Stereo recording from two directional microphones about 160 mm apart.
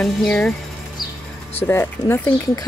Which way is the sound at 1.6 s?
15° left (ahead or behind).